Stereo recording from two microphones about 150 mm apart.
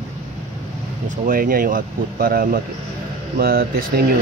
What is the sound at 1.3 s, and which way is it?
A man's voice, 70° right (ahead or behind).